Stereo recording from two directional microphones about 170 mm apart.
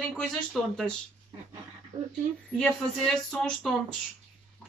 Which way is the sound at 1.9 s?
20° right (ahead or behind).